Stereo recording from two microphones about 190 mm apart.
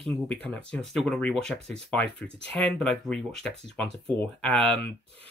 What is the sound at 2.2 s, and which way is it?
Speech, 30° right (ahead or behind).